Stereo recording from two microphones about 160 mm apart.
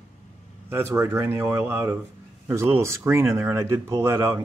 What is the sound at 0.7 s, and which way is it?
Speech, 15° right (ahead or behind).